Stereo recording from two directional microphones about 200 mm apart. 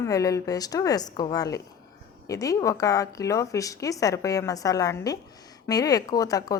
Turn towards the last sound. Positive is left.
turn(degrees=20)  # may be behind; listen again after turning